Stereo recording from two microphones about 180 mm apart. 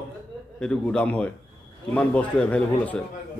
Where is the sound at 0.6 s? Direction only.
5° left (ahead or behind).